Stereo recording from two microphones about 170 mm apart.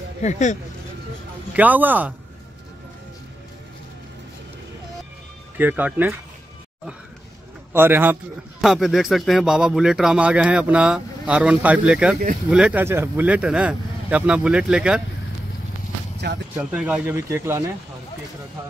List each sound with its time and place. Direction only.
0.2 s speech: 45° left (ahead or behind)
1.5 s speech: 10° right (ahead or behind)
5.6 s speech: 10° right (ahead or behind)
7.7 s speech: 15° right (ahead or behind)
8.5 s speech: centre (ahead or behind)
16.5 s speech: 5° right (ahead or behind)